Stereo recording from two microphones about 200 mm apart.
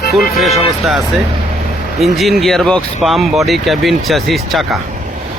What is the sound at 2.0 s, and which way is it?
Speech, centre (ahead or behind).